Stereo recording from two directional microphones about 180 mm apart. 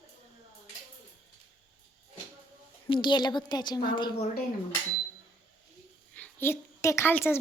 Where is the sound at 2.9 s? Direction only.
25° left (ahead or behind).